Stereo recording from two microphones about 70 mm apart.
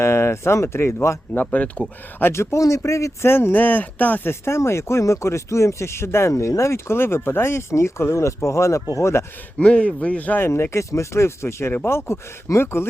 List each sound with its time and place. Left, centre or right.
0.0 s speech: left
1.3 s speech: left
2.1 s speech: left
9.6 s speech: centre
10.4 s speech: left